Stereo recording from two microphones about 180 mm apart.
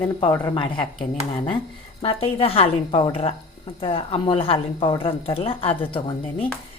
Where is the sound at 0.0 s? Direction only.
25° left (ahead or behind).